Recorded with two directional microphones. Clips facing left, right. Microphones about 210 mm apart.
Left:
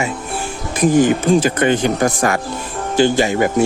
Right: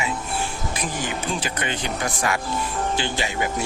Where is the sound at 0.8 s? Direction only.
45° left (ahead or behind).